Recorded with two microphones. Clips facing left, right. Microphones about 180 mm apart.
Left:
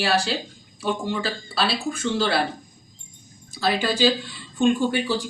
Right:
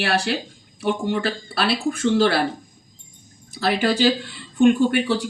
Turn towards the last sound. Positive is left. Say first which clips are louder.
# right 4 dB
turn(degrees=-65)  # may be behind; listen again after turning